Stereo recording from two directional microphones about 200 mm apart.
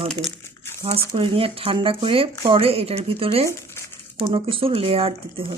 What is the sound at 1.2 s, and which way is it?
Speech, 25° right (ahead or behind).